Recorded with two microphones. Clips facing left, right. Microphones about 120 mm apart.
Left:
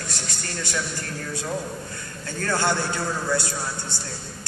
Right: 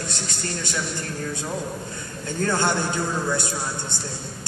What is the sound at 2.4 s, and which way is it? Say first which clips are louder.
Speech: right 1 dB; 20° right (ahead or behind).